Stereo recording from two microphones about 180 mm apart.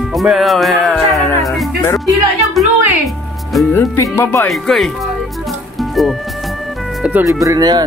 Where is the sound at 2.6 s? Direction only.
Centre (ahead or behind).